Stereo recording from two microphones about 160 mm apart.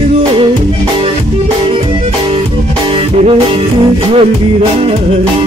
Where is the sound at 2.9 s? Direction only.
35° right (ahead or behind).